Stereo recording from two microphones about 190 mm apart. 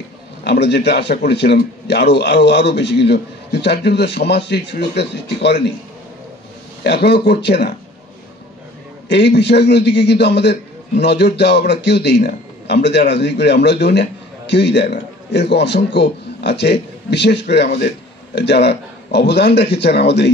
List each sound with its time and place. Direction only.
0.4 s a man's voice: 60° left (ahead or behind)
6.8 s a man's voice: 60° left (ahead or behind)
9.1 s a man's voice: 65° left (ahead or behind)